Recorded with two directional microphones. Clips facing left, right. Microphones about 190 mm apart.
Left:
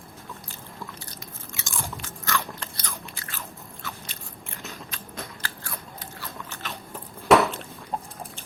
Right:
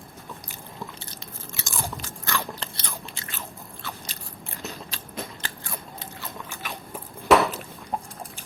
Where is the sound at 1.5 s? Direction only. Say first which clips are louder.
Right 2 dB; 35° right (ahead or behind).